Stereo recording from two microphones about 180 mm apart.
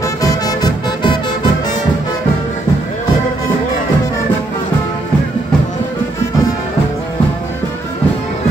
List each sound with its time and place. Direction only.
0.2 s music: 20° left (ahead or behind)